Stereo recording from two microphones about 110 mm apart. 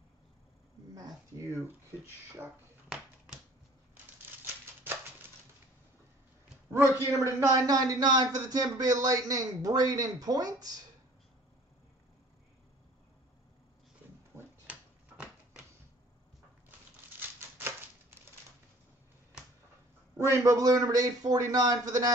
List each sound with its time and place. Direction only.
0.9 s a sound: 35° right (ahead or behind)
7.1 s speech: 25° right (ahead or behind)
14.3 s dog: 10° right (ahead or behind)
17.4 s typewriter: 20° right (ahead or behind)
20.2 s speech: 25° right (ahead or behind)